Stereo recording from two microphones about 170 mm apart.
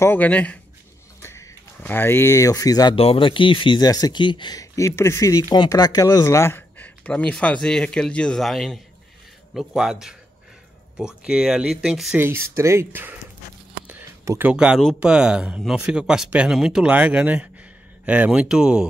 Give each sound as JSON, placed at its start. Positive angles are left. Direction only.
{"t": 0.0, "sound": "speech", "side_deg": 10}
{"t": 12.2, "sound": "speech", "side_deg": -15}
{"t": 13.8, "sound": "a sound", "side_deg": -15}
{"t": 14.5, "sound": "speech", "side_deg": -5}